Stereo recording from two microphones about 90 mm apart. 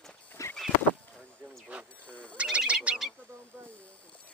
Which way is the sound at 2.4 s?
10° right (ahead or behind).